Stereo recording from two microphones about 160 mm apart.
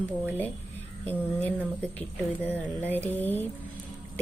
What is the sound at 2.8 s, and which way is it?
Speech, 10° left (ahead or behind).